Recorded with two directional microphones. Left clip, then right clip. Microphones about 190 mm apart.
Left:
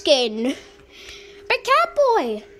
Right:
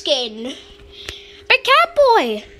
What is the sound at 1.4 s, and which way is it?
A woman's voice, 5° left (ahead or behind).